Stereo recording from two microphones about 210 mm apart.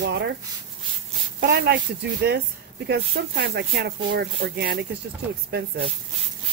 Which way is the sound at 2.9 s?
50° right (ahead or behind).